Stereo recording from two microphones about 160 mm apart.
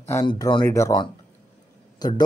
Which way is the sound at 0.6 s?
20° left (ahead or behind).